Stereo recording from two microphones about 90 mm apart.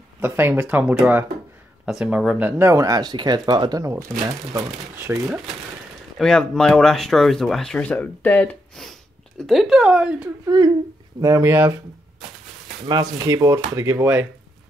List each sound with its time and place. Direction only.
0.2 s speech: 25° right (ahead or behind)
2.6 s speech: 35° right (ahead or behind)
3.8 s speech: 35° right (ahead or behind)
6.1 s speech: 5° left (ahead or behind)
9.5 s speech: 5° right (ahead or behind)
10.4 s speech: 45° right (ahead or behind); by 11.8 s 25° right (ahead or behind)
13.0 s speech: 40° right (ahead or behind)